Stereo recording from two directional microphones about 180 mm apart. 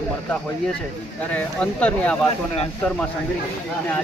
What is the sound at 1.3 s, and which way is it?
Speech, 10° left (ahead or behind).